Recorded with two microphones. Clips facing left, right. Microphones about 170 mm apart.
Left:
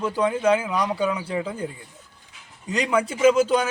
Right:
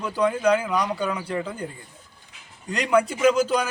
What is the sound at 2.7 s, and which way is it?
A man's voice, centre (ahead or behind).